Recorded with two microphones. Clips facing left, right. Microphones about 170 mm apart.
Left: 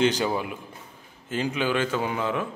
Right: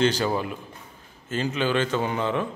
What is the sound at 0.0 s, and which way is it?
A man's voice, 15° left (ahead or behind).